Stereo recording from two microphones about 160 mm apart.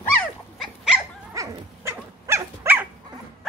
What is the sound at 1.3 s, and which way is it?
Dog, 20° right (ahead or behind).